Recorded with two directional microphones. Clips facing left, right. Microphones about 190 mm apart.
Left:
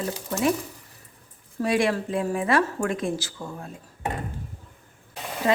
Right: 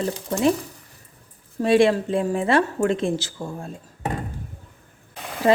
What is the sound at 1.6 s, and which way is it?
Speech, 25° right (ahead or behind).